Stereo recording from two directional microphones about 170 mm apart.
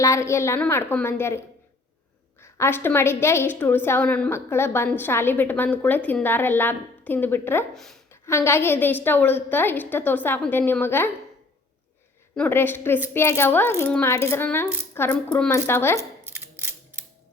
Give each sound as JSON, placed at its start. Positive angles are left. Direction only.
{"t": 0.0, "sound": "a woman's voice", "side_deg": 15}
{"t": 7.8, "sound": "a woman's voice", "side_deg": 0}
{"t": 8.1, "sound": "a woman's voice", "side_deg": 15}
{"t": 12.4, "sound": "a woman's voice", "side_deg": 10}
{"t": 16.2, "sound": "mechanisms", "side_deg": -15}